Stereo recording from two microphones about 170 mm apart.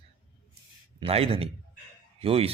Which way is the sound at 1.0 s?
35° right (ahead or behind).